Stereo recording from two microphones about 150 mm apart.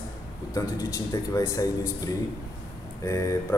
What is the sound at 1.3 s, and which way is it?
Speech, 20° left (ahead or behind).